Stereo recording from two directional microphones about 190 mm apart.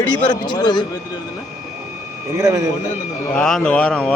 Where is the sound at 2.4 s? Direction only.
20° right (ahead or behind).